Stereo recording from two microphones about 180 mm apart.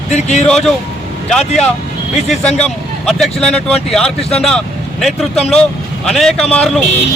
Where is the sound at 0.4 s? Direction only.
Centre (ahead or behind).